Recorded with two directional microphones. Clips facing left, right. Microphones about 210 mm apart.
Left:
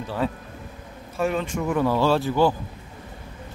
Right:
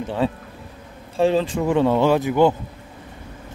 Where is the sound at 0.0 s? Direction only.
25° right (ahead or behind).